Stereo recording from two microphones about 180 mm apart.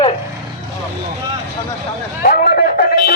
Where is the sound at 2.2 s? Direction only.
55° left (ahead or behind).